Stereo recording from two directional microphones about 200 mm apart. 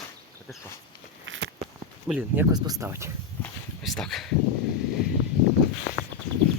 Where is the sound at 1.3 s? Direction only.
75° right (ahead or behind).